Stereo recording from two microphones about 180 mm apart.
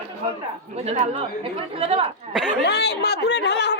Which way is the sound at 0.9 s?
35° right (ahead or behind).